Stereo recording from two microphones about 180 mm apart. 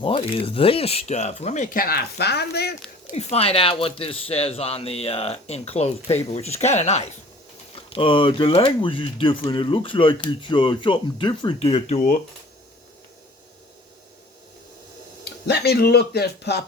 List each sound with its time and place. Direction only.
0.0 s speech: 30° left (ahead or behind); by 2.7 s 65° left (ahead or behind)
3.1 s speech: 35° left (ahead or behind)
15.2 s speech: 65° left (ahead or behind)